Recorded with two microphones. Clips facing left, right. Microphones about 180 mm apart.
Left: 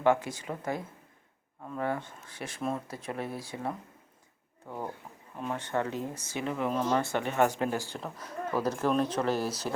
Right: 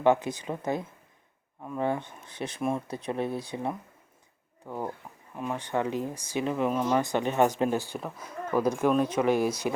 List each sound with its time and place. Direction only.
0.0 s speech: 20° right (ahead or behind)
6.7 s speech: 10° right (ahead or behind)